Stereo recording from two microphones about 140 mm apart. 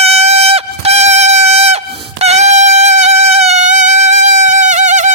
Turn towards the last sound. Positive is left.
turn(degrees=-60)  # may be behind; listen again after turning